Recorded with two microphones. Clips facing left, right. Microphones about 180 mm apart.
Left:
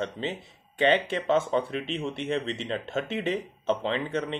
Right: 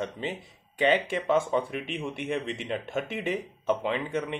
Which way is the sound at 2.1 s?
15° right (ahead or behind).